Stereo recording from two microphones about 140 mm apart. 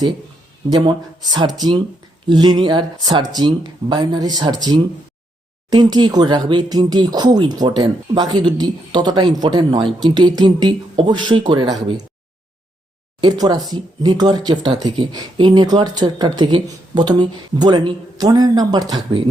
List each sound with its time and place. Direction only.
0.7 s speech: 30° right (ahead or behind)
13.2 s speech: 30° right (ahead or behind)